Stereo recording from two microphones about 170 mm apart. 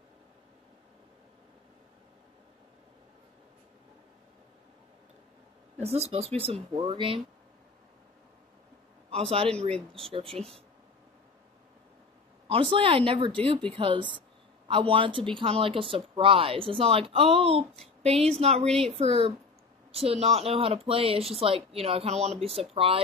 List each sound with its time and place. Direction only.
5.8 s speech: 40° right (ahead or behind)
9.1 s a man's voice: 35° right (ahead or behind)
9.7 s speech: 5° left (ahead or behind)
10.1 s speech: 35° right (ahead or behind)
12.4 s speech: 35° right (ahead or behind)